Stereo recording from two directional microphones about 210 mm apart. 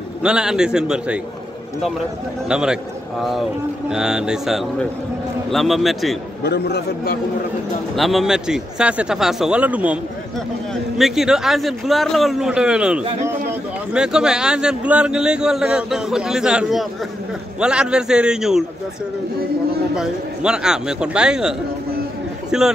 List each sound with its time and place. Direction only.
0.2 s a man's voice: 5° right (ahead or behind)
2.4 s a man's voice: 5° right (ahead or behind)
6.4 s a man's voice: 50° left (ahead or behind)
7.9 s a man's voice: centre (ahead or behind)
20.0 s a man's voice: 5° right (ahead or behind)